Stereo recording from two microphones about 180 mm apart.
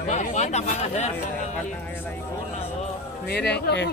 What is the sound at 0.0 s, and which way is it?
Chatter, 40° left (ahead or behind).